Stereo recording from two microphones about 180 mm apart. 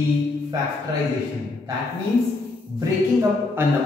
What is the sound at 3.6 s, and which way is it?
Speech, 15° right (ahead or behind).